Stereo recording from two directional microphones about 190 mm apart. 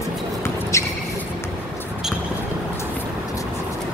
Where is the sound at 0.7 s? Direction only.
15° left (ahead or behind).